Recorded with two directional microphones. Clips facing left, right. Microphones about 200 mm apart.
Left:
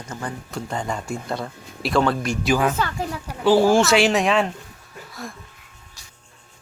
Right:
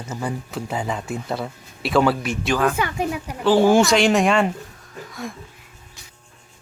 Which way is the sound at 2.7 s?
15° right (ahead or behind).